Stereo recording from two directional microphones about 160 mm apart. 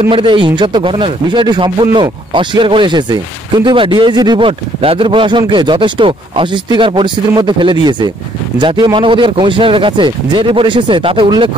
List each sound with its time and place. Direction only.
0.1 s speech: 30° right (ahead or behind)